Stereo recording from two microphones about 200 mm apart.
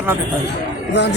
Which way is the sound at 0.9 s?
60° left (ahead or behind).